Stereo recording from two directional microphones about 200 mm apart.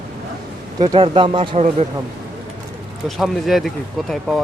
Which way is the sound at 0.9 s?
25° right (ahead or behind).